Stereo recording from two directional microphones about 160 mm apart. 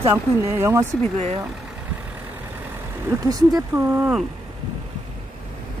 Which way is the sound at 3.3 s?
20° right (ahead or behind).